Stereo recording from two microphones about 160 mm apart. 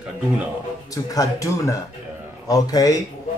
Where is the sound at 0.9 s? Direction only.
20° left (ahead or behind).